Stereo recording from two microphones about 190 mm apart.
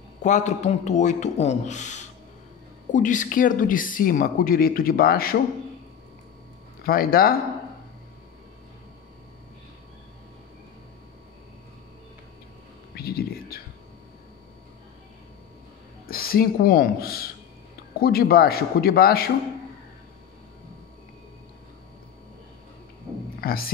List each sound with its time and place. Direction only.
0.2 s speech: 40° left (ahead or behind)
6.8 s speech: 50° left (ahead or behind)
12.9 s a sound: 55° left (ahead or behind)
16.1 s speech: 50° left (ahead or behind)
23.4 s speech: 50° left (ahead or behind)